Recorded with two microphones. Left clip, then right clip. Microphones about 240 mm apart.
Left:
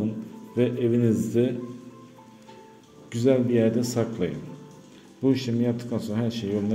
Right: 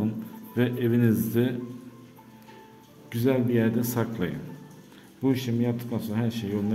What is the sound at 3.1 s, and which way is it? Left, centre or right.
A man's voice, centre.